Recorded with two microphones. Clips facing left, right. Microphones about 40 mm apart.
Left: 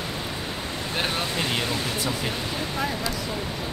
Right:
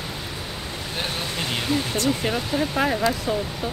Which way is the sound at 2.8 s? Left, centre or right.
Right.